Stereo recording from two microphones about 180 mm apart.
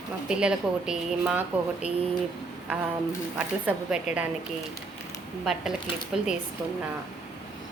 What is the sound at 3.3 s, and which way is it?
Speech, 5° right (ahead or behind).